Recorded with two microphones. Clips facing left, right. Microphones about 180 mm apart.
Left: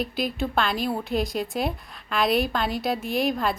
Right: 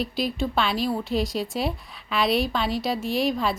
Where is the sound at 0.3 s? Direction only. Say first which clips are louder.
Even; centre (ahead or behind).